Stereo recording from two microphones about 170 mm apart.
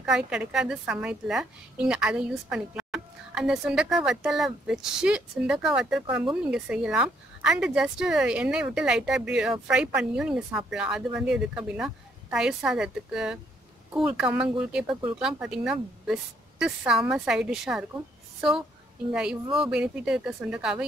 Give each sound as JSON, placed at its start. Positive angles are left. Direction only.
{"t": 0.0, "sound": "a woman's voice", "side_deg": -5}
{"t": 19.4, "sound": "speech", "side_deg": -30}
{"t": 19.7, "sound": "a woman's voice", "side_deg": -5}